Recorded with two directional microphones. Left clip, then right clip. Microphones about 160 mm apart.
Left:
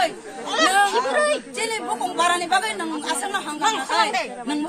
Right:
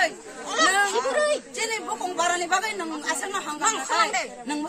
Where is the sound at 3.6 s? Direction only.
15° right (ahead or behind).